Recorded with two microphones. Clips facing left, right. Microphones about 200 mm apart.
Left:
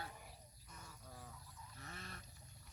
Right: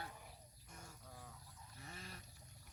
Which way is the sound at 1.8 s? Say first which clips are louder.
Even; 10° right (ahead or behind).